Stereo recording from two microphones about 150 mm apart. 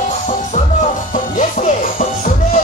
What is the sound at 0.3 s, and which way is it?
Music, 55° left (ahead or behind).